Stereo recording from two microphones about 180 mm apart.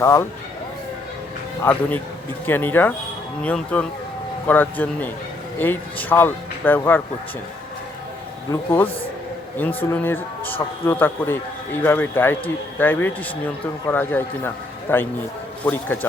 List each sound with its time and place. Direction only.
0.0 s speech: 15° left (ahead or behind)
1.7 s speech: 10° left (ahead or behind)
9.6 s speech: 10° left (ahead or behind)